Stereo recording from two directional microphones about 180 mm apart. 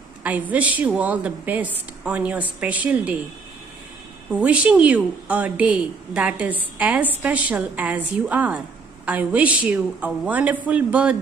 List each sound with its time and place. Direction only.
0.2 s a woman's voice: 10° right (ahead or behind)
4.3 s a woman's voice: 5° right (ahead or behind)